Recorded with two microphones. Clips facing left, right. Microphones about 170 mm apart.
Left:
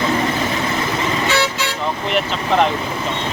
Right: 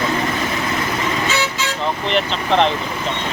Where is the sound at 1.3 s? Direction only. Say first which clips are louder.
Left 2 dB; 65° left (ahead or behind).